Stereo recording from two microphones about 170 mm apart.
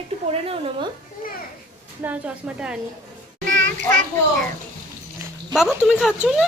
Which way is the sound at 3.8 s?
45° right (ahead or behind).